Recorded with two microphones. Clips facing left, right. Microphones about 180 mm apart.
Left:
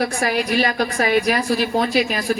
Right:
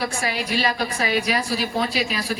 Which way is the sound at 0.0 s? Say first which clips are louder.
Left 5 dB; 60° left (ahead or behind).